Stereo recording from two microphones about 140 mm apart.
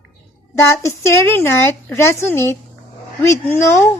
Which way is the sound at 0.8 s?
20° left (ahead or behind).